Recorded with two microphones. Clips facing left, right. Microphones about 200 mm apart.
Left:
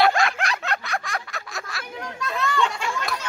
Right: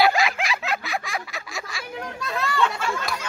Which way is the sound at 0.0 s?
Centre (ahead or behind).